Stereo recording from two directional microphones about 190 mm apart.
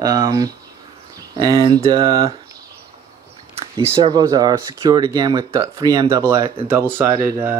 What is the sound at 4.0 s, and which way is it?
Speech, 20° right (ahead or behind).